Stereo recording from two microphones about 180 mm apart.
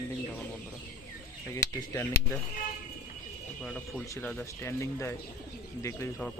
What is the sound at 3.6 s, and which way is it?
Speech, 5° left (ahead or behind).